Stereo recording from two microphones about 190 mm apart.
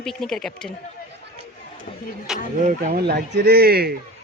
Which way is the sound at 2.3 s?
5° right (ahead or behind).